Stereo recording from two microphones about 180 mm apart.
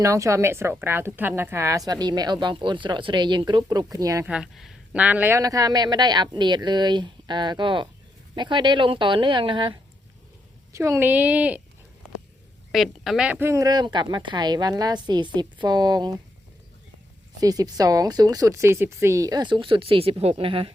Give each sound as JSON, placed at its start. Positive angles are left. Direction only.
{"t": 0.0, "sound": "a woman's voice", "side_deg": -15}
{"t": 4.3, "sound": "a woman's voice", "side_deg": -5}
{"t": 10.7, "sound": "speech", "side_deg": -15}
{"t": 12.7, "sound": "a woman's voice", "side_deg": 0}
{"t": 17.4, "sound": "a woman's voice", "side_deg": -20}